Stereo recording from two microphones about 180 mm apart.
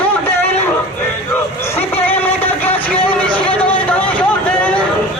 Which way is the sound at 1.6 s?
15° left (ahead or behind).